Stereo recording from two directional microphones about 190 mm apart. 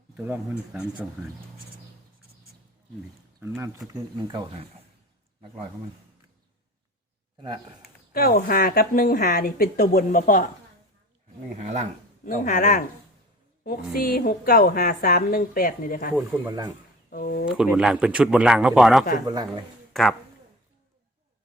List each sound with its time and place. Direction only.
0.7 s a man's voice: 5° right (ahead or behind)
3.9 s speech: 20° right (ahead or behind)
8.1 s a woman's voice: 55° left (ahead or behind)
11.5 s speech: 35° right (ahead or behind)
12.2 s a woman's voice: 45° left (ahead or behind)
16.5 s speech: 20° right (ahead or behind)
17.1 s a woman's voice: 50° left (ahead or behind)
17.6 s a man's voice: 5° right (ahead or behind)
19.2 s speech: 20° right (ahead or behind)
19.9 s speech: centre (ahead or behind)